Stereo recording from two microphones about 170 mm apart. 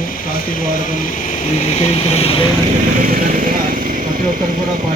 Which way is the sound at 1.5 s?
35° left (ahead or behind).